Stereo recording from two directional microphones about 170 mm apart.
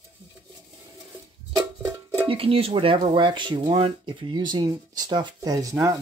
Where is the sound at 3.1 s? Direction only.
30° right (ahead or behind).